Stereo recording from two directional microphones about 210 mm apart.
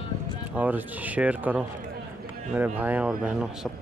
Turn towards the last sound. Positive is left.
turn(degrees=-5)  # may be behind; listen again after turning